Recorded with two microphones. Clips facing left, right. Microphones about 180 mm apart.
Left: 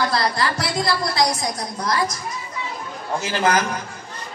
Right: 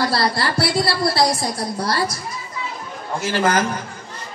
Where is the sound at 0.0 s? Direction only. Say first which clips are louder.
Right 1 dB; 30° right (ahead or behind).